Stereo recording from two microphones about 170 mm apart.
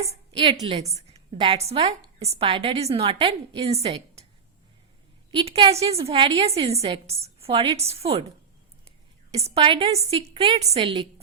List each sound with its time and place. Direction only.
0.1 s a woman's voice: 30° right (ahead or behind)
3.8 s a sound: 40° right (ahead or behind)
5.3 s a woman's voice: 30° right (ahead or behind)
9.3 s a woman's voice: 35° right (ahead or behind)